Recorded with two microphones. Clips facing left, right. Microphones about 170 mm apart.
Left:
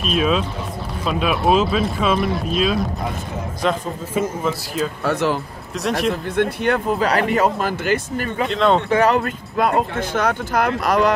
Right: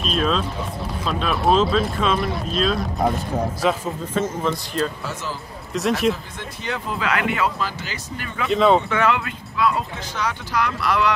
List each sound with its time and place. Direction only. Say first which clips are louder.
0.0 s speech: left 3 dB; 5° left (ahead or behind)
4.1 s speech: left 2 dB; 10° left (ahead or behind)
5.0 s speech: left 10 dB; 65° left (ahead or behind)
5.8 s speech: right 1 dB; centre (ahead or behind)
6.3 s speech: left 11 dB; 60° left (ahead or behind)
7.0 s speech: left 5 dB; 35° left (ahead or behind)
8.5 s speech: right 2 dB; 5° right (ahead or behind)
8.9 s speech: left 5 dB; 40° left (ahead or behind)